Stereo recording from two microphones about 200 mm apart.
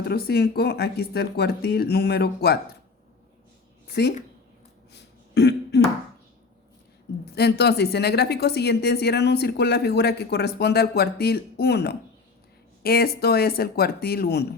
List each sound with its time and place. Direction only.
0.0 s speech: 50° left (ahead or behind)
4.9 s throat clearing: 55° left (ahead or behind)
7.3 s a woman's voice: 55° left (ahead or behind)